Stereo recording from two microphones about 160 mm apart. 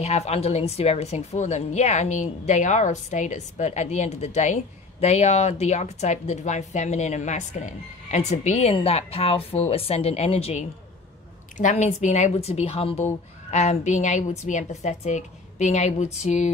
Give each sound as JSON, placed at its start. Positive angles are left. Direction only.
{"t": 0.0, "sound": "speech", "side_deg": 45}